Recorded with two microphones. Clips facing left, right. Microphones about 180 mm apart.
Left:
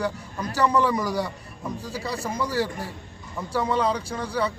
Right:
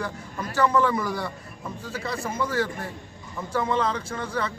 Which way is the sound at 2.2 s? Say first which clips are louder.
Even; 15° left (ahead or behind).